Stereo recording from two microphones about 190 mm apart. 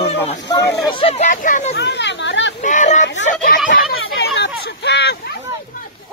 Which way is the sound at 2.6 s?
40° left (ahead or behind).